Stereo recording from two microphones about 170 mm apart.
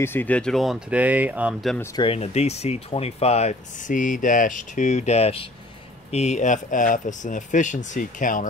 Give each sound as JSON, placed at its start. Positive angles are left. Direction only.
{"t": 0.0, "sound": "speech", "side_deg": 10}
{"t": 2.0, "sound": "speech", "side_deg": 35}